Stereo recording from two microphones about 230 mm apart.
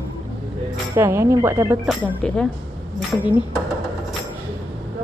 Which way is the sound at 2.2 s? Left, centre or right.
Centre.